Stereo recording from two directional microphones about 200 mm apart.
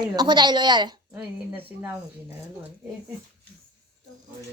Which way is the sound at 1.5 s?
10° right (ahead or behind).